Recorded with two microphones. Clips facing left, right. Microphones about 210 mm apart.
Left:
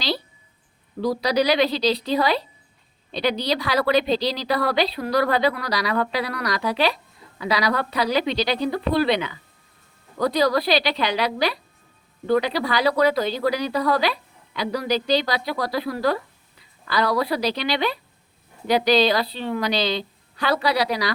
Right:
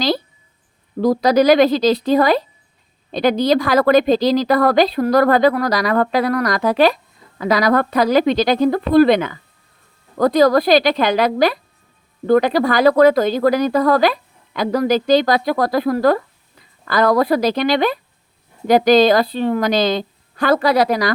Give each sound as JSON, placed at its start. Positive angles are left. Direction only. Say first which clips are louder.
{"t": 0.9, "sound": "a woman's voice", "louder": "right 7 dB", "side_deg": -45}